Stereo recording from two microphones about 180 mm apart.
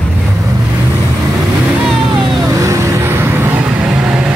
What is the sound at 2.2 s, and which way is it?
Vehicle, 20° right (ahead or behind).